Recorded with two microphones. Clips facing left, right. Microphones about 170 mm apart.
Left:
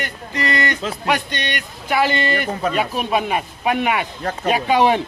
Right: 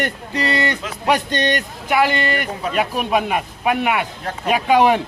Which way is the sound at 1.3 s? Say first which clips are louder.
Right 7 dB; 45° right (ahead or behind).